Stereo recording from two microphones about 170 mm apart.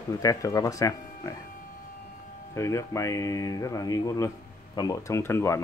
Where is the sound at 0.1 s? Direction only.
20° left (ahead or behind).